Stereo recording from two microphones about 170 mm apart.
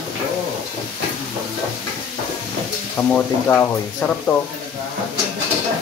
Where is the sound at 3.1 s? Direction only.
10° left (ahead or behind).